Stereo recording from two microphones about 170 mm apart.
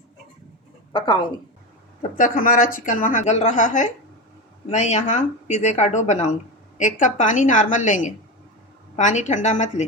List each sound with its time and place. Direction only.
0.9 s a woman's voice: 30° left (ahead or behind)
2.0 s speech: 50° left (ahead or behind)